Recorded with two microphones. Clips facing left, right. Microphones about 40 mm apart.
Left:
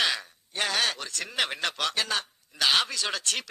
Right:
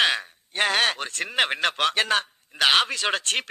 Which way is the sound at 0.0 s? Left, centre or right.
Right.